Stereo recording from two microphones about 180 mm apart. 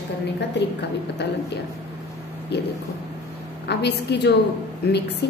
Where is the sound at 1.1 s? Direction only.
70° left (ahead or behind).